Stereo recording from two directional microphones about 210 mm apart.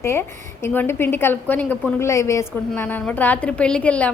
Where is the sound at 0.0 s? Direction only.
10° left (ahead or behind).